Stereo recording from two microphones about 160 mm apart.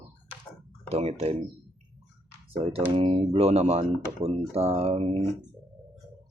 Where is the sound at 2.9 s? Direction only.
35° right (ahead or behind).